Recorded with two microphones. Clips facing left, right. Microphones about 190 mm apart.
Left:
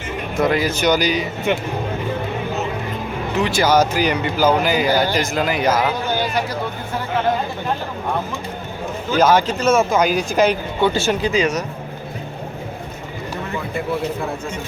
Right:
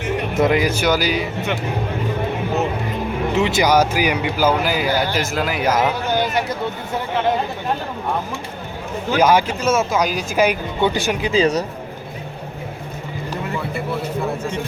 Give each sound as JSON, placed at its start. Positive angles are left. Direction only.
{"t": 0.3, "sound": "speech", "side_deg": -20}
{"t": 3.3, "sound": "speech", "side_deg": -20}
{"t": 9.1, "sound": "speech", "side_deg": -10}
{"t": 11.3, "sound": "speech", "side_deg": -30}